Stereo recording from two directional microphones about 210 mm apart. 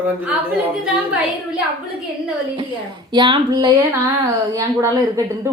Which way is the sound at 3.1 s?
20° right (ahead or behind).